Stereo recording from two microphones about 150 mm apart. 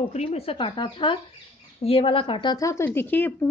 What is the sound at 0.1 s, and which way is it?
A woman's voice, 45° left (ahead or behind).